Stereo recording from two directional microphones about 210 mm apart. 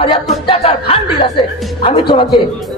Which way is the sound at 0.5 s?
25° left (ahead or behind).